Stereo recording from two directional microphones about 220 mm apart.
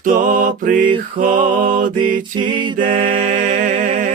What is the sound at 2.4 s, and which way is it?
A capella, 20° right (ahead or behind).